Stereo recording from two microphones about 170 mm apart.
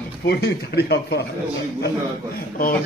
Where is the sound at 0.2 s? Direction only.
70° left (ahead or behind).